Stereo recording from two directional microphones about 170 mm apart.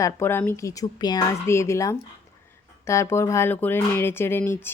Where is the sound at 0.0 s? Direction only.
15° left (ahead or behind).